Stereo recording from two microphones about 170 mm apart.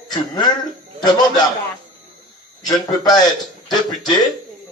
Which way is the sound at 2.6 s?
20° left (ahead or behind).